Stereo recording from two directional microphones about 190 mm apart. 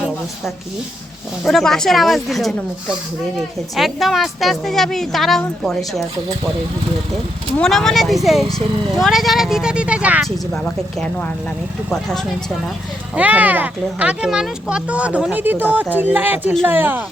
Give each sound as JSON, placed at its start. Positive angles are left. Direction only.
{"t": 1.5, "sound": "speech", "side_deg": 0}
{"t": 3.8, "sound": "speech", "side_deg": 0}
{"t": 7.6, "sound": "speech", "side_deg": 0}
{"t": 10.5, "sound": "speech", "side_deg": 5}
{"t": 13.1, "sound": "speech", "side_deg": -10}